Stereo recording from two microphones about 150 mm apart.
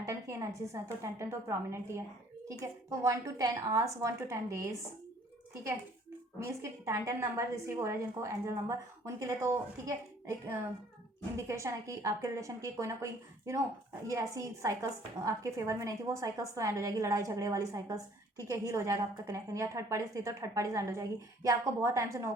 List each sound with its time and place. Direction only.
0.0 s a sound: 20° right (ahead or behind)
1.0 s a woman's voice: 20° right (ahead or behind)
3.0 s a woman's voice: 20° right (ahead or behind)
6.4 s a woman's voice: 20° right (ahead or behind)